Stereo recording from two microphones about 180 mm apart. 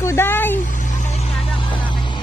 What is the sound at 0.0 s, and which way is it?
Vehicle, 15° left (ahead or behind).